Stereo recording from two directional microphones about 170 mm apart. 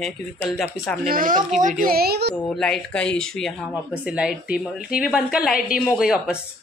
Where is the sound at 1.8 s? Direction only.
65° right (ahead or behind).